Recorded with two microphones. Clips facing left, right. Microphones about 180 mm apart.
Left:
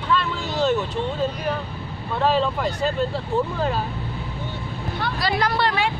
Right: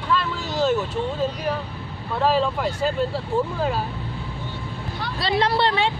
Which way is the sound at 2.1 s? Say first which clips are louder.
Even; 5° right (ahead or behind).